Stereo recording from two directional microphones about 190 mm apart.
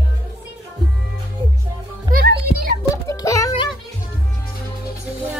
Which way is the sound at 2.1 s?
50° right (ahead or behind).